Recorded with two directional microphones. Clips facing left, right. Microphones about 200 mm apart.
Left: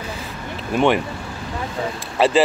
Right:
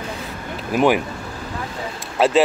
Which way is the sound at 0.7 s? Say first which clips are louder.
Right 1 dB; 5° right (ahead or behind).